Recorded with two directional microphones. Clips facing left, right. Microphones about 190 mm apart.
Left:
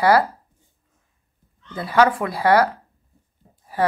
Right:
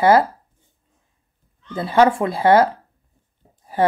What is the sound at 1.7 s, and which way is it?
Speech, 25° right (ahead or behind).